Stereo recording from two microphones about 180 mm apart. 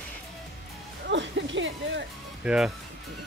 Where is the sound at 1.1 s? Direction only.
90° right.